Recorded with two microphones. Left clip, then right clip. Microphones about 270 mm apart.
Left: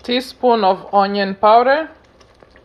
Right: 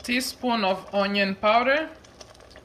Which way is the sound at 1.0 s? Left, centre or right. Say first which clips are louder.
Left 6 dB; left.